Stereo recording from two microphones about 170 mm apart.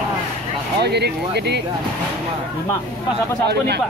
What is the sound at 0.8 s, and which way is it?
Speech, 75° right (ahead or behind).